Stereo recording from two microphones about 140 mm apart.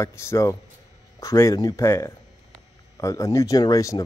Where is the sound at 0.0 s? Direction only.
20° left (ahead or behind).